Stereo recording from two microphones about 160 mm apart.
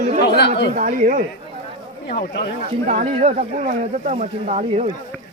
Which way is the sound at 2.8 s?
45° right (ahead or behind).